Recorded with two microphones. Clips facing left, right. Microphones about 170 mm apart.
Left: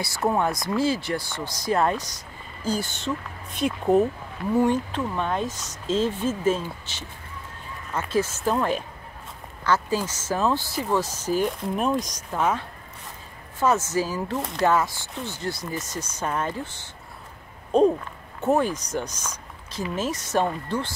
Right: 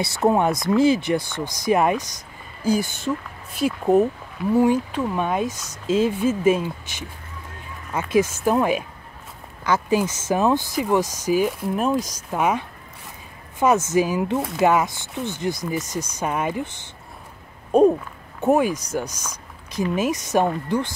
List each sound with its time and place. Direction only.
0.0 s speech: 20° right (ahead or behind)